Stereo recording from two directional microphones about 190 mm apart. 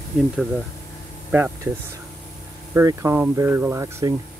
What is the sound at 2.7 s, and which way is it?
Speech, 15° right (ahead or behind).